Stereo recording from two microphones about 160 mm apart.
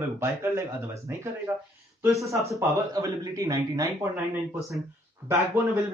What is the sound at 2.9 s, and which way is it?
Speech, 20° right (ahead or behind).